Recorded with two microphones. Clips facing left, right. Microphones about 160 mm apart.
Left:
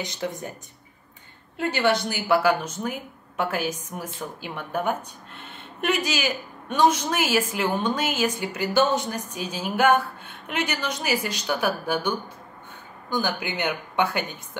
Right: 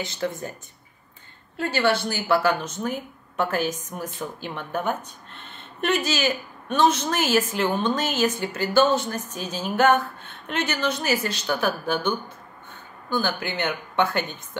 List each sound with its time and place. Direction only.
0.0 s a woman's voice: 15° left (ahead or behind)
1.6 s a woman's voice: 15° left (ahead or behind)